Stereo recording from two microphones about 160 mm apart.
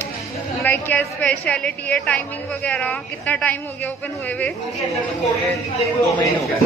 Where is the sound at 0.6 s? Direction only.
10° left (ahead or behind).